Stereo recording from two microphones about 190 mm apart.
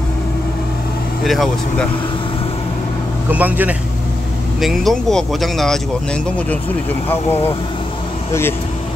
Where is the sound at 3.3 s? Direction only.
10° right (ahead or behind).